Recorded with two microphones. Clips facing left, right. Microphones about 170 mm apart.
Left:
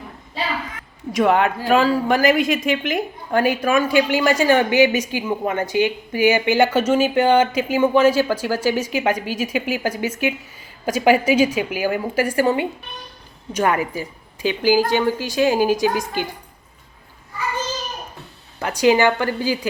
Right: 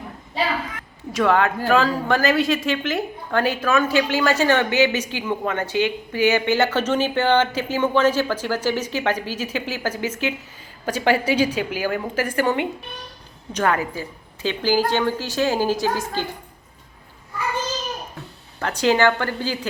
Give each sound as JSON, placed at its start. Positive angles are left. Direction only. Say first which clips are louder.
{"t": 1.1, "sound": "a woman's voice", "louder": "left 2 dB", "side_deg": 20}
{"t": 13.5, "sound": "a woman's voice", "louder": "left 2 dB", "side_deg": 10}
{"t": 18.6, "sound": "a woman's voice", "louder": "left 2 dB", "side_deg": 10}